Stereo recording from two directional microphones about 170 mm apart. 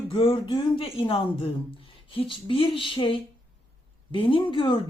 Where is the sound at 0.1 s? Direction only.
30° left (ahead or behind).